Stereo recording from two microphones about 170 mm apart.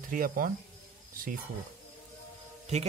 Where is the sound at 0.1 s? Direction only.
55° right (ahead or behind).